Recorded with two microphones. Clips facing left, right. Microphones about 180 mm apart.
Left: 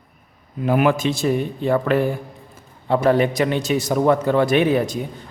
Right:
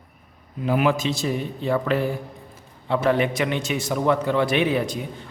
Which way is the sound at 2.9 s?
40° left (ahead or behind).